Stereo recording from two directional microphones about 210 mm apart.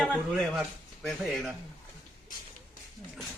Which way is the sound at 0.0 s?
5° left (ahead or behind).